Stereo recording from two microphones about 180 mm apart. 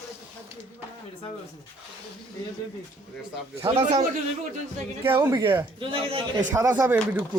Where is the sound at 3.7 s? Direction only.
35° right (ahead or behind).